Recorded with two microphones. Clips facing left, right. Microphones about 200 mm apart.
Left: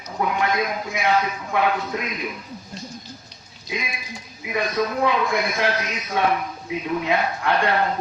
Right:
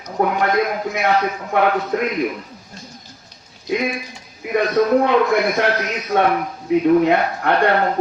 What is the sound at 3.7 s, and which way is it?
Speech, 60° right (ahead or behind).